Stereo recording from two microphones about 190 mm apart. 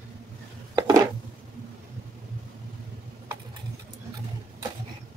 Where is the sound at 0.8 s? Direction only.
20° right (ahead or behind).